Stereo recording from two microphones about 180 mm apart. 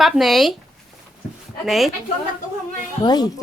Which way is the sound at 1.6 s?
Centre (ahead or behind).